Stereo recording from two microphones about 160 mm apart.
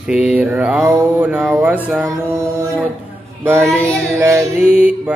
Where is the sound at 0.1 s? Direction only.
5° right (ahead or behind).